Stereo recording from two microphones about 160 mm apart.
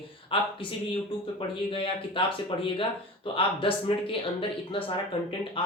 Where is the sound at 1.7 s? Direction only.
35° left (ahead or behind).